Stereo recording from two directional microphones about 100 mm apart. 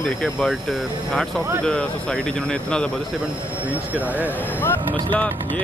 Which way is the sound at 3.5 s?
15° right (ahead or behind).